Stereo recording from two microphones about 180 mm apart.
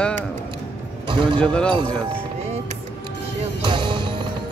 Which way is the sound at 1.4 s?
5° left (ahead or behind).